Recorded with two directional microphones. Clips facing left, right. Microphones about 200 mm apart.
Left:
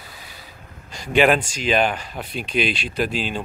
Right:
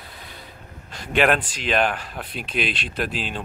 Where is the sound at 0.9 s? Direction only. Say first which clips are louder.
Left 3 dB; centre (ahead or behind).